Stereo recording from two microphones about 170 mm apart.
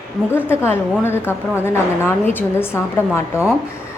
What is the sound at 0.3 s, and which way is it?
Speech, 15° left (ahead or behind).